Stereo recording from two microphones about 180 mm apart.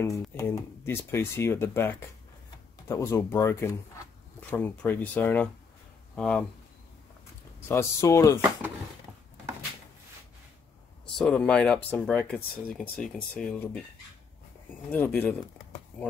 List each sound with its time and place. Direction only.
0.0 s speech: 15° left (ahead or behind)
7.6 s speech: 15° left (ahead or behind)
11.1 s speech: 5° left (ahead or behind)
14.9 s speech: 10° left (ahead or behind)